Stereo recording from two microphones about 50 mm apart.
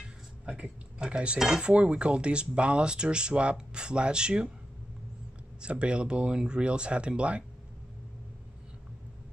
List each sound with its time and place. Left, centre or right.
0.5 s speech: right
5.6 s speech: right